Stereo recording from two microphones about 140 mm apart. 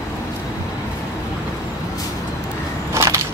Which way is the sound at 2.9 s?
20° right (ahead or behind).